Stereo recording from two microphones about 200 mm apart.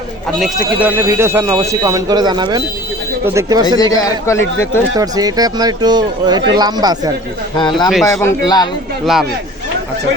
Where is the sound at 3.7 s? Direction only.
20° left (ahead or behind).